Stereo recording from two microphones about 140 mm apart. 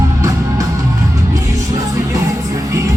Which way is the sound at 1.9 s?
20° right (ahead or behind).